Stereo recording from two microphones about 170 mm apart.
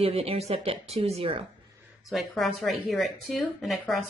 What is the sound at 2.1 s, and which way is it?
Speech, centre (ahead or behind).